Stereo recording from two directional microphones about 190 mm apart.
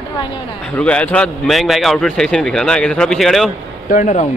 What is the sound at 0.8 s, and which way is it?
A man's voice, 5° left (ahead or behind).